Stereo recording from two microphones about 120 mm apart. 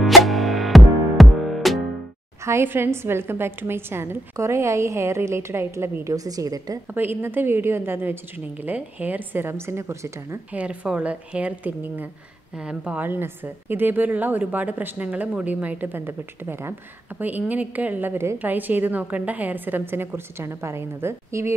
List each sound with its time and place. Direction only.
0.0 s music: centre (ahead or behind)
2.4 s a woman's voice: 20° right (ahead or behind)
6.9 s a woman's voice: 15° right (ahead or behind)
10.5 s a woman's voice: 10° right (ahead or behind)